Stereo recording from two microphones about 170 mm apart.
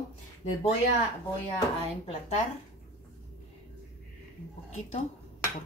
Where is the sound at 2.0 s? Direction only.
40° left (ahead or behind).